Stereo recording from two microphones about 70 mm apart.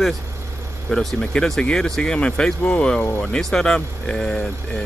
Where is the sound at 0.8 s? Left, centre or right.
Centre.